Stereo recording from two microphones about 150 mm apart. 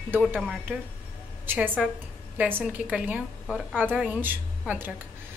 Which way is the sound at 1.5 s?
10° right (ahead or behind).